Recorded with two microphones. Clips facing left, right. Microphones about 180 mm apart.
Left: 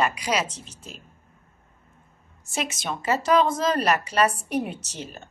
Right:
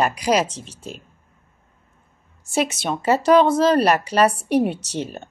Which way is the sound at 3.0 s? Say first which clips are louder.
Right 6 dB; 30° right (ahead or behind).